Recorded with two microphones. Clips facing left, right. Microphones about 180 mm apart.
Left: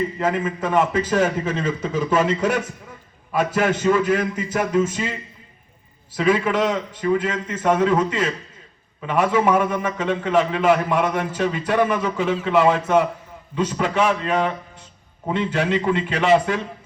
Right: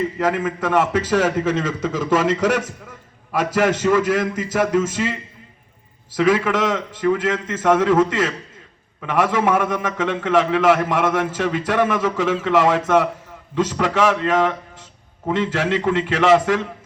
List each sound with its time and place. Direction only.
0.2 s a man's voice: 85° right
6.1 s a man's voice: 90° right